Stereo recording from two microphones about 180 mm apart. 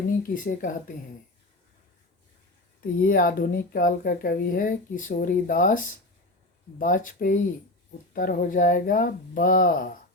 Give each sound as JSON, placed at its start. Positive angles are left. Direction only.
{"t": 0.2, "sound": "speech", "side_deg": 50}
{"t": 3.0, "sound": "speech", "side_deg": 55}